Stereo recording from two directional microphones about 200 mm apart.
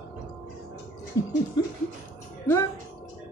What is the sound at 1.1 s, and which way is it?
Snicker, 15° left (ahead or behind).